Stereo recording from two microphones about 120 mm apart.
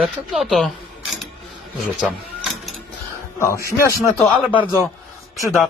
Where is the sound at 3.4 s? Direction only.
25° left (ahead or behind).